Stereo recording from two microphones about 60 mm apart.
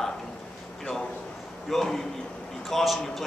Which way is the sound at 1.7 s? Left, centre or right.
Centre.